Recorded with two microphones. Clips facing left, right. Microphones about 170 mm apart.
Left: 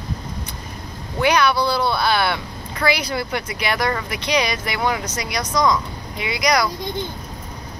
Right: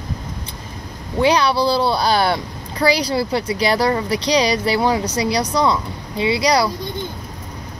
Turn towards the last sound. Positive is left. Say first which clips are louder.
# right 4 dB
turn(degrees=-30)  # may be behind; listen again after turning